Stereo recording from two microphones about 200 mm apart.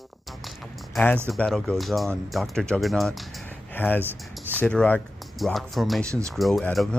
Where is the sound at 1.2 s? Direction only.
5° left (ahead or behind).